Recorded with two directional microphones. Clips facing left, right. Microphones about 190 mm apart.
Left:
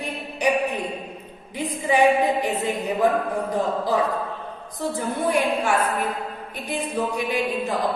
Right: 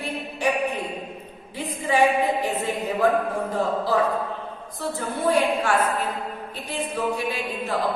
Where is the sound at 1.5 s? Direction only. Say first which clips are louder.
Left 1 dB; 15° left (ahead or behind).